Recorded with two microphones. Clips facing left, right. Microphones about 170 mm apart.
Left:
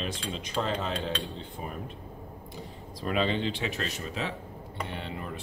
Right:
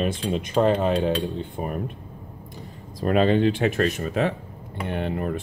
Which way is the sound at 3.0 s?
50° right (ahead or behind).